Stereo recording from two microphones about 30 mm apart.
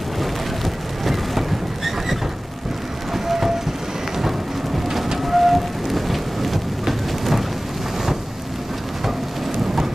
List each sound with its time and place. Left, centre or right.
3.3 s train: centre
4.8 s rain: centre